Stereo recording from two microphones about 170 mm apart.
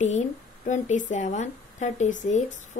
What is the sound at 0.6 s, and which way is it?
A woman's voice, 45° left (ahead or behind).